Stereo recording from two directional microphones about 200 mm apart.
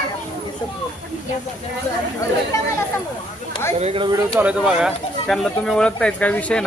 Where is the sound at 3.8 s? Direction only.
30° right (ahead or behind).